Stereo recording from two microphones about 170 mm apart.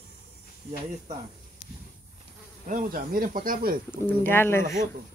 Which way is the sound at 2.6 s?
55° right (ahead or behind).